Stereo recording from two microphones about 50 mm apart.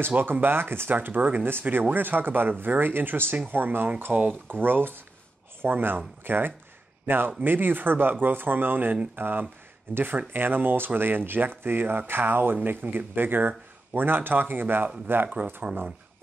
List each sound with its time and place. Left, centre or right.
0.2 s speech: right
0.9 s speech: right
4.1 s speech: right
4.6 s speech: right